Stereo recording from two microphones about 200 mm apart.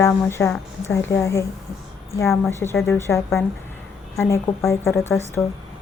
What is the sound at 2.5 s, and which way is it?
Speech, 10° left (ahead or behind).